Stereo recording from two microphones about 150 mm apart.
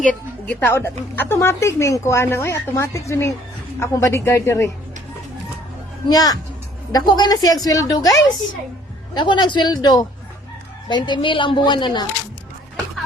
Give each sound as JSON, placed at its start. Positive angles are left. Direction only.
{"t": 0.0, "sound": "a woman's voice", "side_deg": 10}
{"t": 6.1, "sound": "a woman's voice", "side_deg": 25}